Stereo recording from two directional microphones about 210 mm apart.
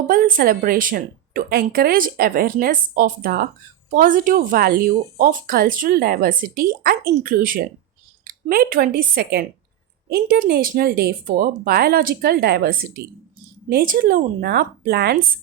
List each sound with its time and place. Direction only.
0.1 s a woman's voice: 40° right (ahead or behind)